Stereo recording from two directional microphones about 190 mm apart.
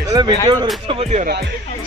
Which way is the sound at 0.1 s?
20° right (ahead or behind).